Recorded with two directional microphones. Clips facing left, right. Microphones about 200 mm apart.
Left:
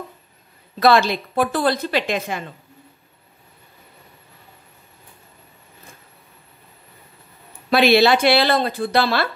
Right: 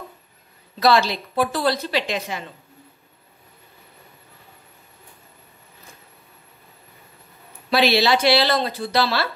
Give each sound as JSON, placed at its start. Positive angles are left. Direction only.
{"t": 0.7, "sound": "a woman's voice", "side_deg": 55}
{"t": 7.7, "sound": "a woman's voice", "side_deg": 55}